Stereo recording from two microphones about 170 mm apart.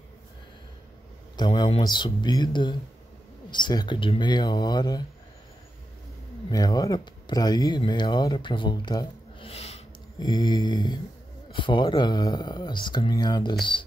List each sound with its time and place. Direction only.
1.3 s speech: 25° left (ahead or behind)
6.5 s speech: 20° left (ahead or behind); by 9.8 s 35° left (ahead or behind)
10.1 s speech: 25° left (ahead or behind)